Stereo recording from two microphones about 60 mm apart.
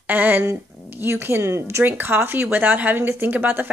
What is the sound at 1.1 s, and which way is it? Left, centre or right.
Speech, right.